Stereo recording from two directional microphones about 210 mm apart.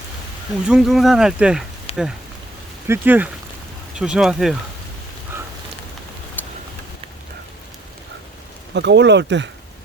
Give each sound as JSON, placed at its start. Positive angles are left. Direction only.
{"t": 0.7, "sound": "speech", "side_deg": 0}
{"t": 1.9, "sound": "rain", "side_deg": 25}
{"t": 2.8, "sound": "speech", "side_deg": -10}
{"t": 6.4, "sound": "a sound", "side_deg": 10}
{"t": 8.7, "sound": "speech", "side_deg": -55}